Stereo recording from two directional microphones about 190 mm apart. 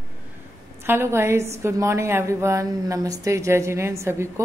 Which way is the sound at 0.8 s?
15° right (ahead or behind).